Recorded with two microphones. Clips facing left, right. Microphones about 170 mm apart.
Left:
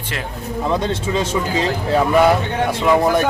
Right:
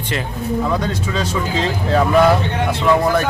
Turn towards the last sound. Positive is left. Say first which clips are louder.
# even
turn(degrees=15)  # may be behind; listen again after turning